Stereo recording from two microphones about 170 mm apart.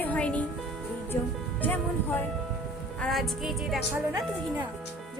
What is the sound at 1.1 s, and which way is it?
Speech, 20° left (ahead or behind).